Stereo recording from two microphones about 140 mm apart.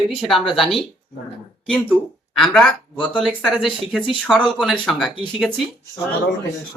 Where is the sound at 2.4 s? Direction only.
5° left (ahead or behind).